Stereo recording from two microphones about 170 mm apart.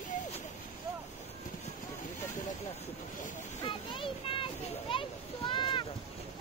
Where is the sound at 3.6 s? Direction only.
30° left (ahead or behind).